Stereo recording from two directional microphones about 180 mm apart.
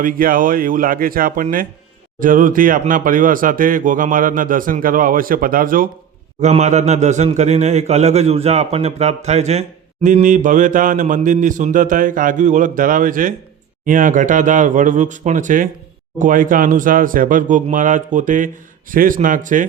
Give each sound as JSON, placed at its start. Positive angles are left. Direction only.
{"t": 0.0, "sound": "a man's voice", "side_deg": -50}
{"t": 6.4, "sound": "a man's voice", "side_deg": -40}